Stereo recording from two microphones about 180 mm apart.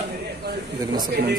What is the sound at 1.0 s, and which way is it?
Speech, 60° right (ahead or behind).